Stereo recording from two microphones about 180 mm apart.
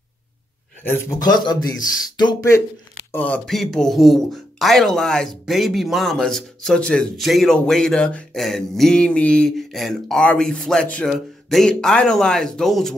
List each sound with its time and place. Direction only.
0.8 s speech: 15° left (ahead or behind)
3.1 s speech: 10° left (ahead or behind)